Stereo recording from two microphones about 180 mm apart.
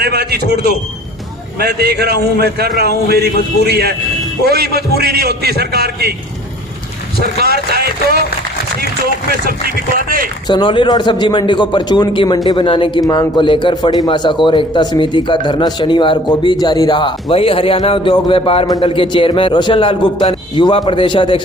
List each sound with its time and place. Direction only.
0.0 s a sound: 60° right (ahead or behind)
1.5 s a man's voice: 60° right (ahead or behind)
7.2 s a man's voice: 60° right (ahead or behind)
9.3 s a man's voice: 55° right (ahead or behind)
10.4 s a man's voice: 25° left (ahead or behind)